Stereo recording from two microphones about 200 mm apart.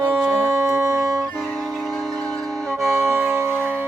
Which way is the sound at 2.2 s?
15° right (ahead or behind).